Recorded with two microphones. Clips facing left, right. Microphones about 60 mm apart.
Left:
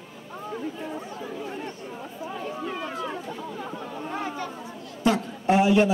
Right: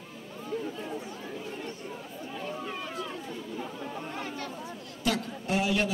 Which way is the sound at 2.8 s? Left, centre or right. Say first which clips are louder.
Left 5 dB; left.